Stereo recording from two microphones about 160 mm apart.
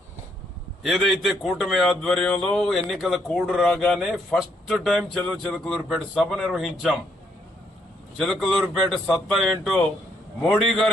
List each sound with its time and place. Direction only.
0.8 s speech: centre (ahead or behind)
8.2 s speech: centre (ahead or behind)